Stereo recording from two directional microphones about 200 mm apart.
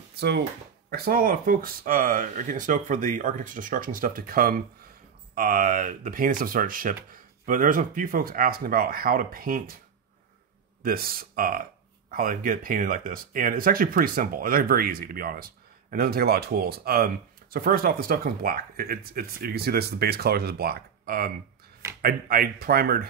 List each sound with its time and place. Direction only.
0.1 s a sound: 55° right (ahead or behind)
0.8 s speech: 50° right (ahead or behind)
10.8 s speech: 45° right (ahead or behind)